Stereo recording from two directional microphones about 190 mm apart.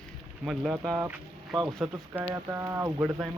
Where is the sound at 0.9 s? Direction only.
15° right (ahead or behind).